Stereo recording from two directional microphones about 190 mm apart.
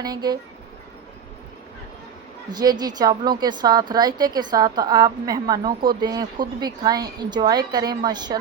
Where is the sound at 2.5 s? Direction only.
20° right (ahead or behind).